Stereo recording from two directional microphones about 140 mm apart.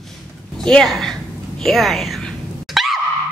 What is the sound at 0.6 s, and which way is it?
Speech, 5° left (ahead or behind).